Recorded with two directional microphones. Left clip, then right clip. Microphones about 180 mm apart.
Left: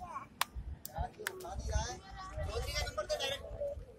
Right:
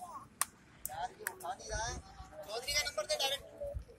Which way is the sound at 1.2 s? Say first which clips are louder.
Right 1 dB; 40° left (ahead or behind).